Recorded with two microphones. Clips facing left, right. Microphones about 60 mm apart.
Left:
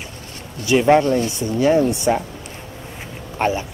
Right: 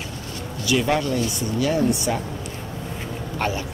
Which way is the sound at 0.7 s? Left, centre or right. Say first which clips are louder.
Left 7 dB; left.